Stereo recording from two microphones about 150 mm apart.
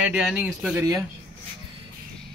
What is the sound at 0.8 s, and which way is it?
Speech, 20° right (ahead or behind).